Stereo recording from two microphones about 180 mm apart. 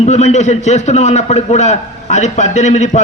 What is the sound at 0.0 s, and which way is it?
A man's voice, 40° left (ahead or behind).